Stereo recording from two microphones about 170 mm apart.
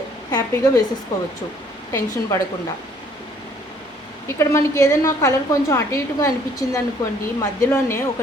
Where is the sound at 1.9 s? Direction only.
15° left (ahead or behind).